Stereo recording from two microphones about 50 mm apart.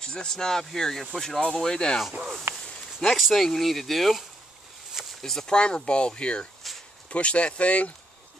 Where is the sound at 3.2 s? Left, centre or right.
Centre.